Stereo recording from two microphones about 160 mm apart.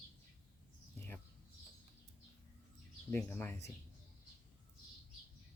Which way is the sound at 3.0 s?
10° left (ahead or behind).